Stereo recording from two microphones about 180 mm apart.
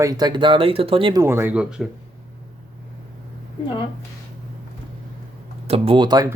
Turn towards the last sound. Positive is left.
turn(degrees=-25)  # may be behind; listen again after turning